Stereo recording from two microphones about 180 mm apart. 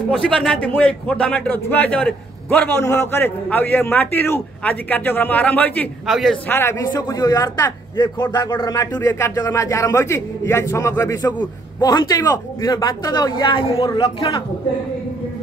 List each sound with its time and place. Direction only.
0.2 s a man's voice: 5° left (ahead or behind)
6.5 s a man's voice: 15° left (ahead or behind)